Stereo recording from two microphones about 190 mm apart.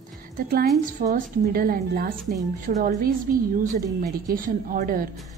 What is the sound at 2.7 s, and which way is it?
A woman's voice, 40° right (ahead or behind).